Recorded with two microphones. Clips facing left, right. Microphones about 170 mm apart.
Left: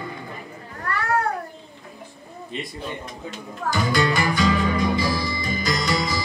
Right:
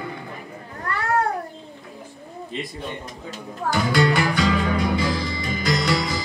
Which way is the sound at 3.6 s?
70° right (ahead or behind).